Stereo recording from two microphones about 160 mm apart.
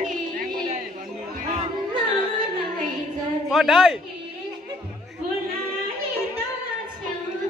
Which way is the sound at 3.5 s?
Centre (ahead or behind).